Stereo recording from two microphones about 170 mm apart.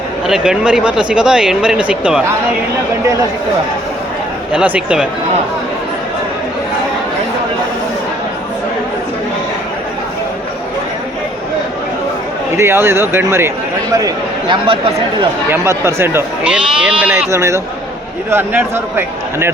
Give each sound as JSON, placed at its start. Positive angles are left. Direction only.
{"t": 0.3, "sound": "speech", "side_deg": -5}
{"t": 4.5, "sound": "speech", "side_deg": -5}
{"t": 12.5, "sound": "speech", "side_deg": -15}
{"t": 15.4, "sound": "speech", "side_deg": -15}